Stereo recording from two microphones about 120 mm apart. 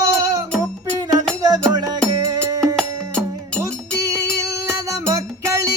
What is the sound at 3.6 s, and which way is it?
Music, 25° right (ahead or behind).